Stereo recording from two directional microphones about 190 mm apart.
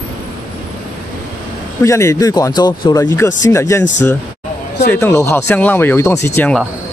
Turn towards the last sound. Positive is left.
turn(degrees=10)  # may be behind; listen again after turning